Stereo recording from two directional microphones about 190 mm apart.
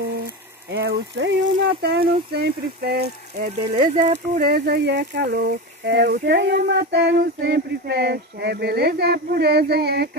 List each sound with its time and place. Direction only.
0.7 s speech: 60° right (ahead or behind)
3.7 s speech: 40° right (ahead or behind)
4.5 s speech: 60° right (ahead or behind)